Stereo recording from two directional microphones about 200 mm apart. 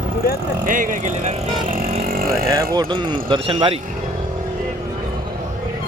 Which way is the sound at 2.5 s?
20° right (ahead or behind).